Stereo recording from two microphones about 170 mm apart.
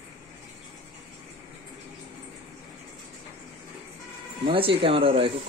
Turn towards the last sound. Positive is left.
turn(degrees=-30)  # may be behind; listen again after turning